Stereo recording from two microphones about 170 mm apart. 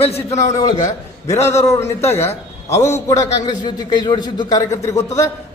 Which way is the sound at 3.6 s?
25° left (ahead or behind).